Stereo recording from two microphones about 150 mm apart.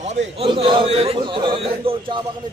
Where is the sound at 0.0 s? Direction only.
50° right (ahead or behind).